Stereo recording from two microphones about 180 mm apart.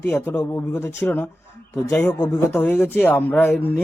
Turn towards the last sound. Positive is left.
turn(degrees=10)  # may be behind; listen again after turning